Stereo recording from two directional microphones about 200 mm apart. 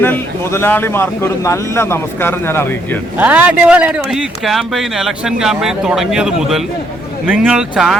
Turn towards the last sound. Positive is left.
turn(degrees=-5)  # may be behind; listen again after turning